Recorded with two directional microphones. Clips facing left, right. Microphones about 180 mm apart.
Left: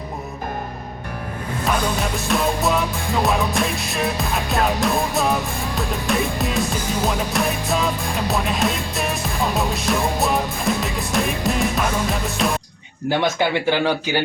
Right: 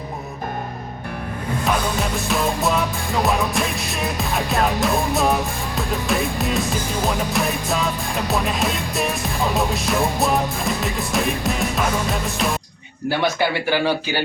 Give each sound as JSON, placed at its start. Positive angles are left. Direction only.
{"t": 2.2, "sound": "music", "side_deg": 0}
{"t": 13.1, "sound": "speech", "side_deg": 20}